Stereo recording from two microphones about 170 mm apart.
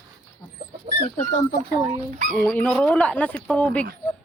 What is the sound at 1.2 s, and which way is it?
Speech, 45° left (ahead or behind).